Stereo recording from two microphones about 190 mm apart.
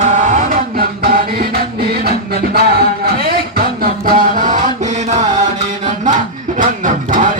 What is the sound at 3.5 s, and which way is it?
Music, 50° right (ahead or behind).